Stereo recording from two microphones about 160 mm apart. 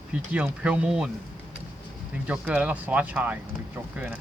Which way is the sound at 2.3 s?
10° right (ahead or behind).